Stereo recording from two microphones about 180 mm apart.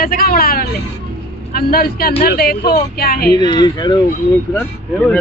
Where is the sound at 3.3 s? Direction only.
25° left (ahead or behind).